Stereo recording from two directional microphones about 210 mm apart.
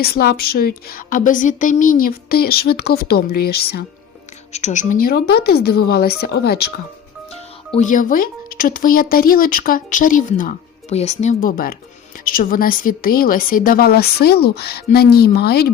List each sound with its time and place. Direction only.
0.0 s speech: 50° left (ahead or behind)
4.5 s speech: 35° left (ahead or behind)
7.8 s speech: 40° left (ahead or behind)